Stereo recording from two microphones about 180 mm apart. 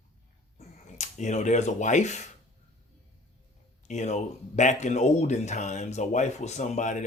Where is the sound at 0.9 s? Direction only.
40° left (ahead or behind).